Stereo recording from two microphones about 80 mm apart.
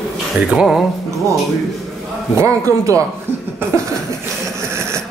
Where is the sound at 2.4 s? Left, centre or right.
Right.